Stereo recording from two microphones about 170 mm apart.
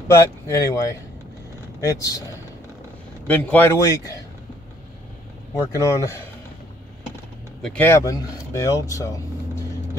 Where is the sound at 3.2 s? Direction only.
10° left (ahead or behind).